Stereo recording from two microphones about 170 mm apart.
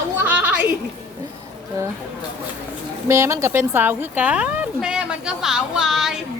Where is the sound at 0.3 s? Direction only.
10° right (ahead or behind).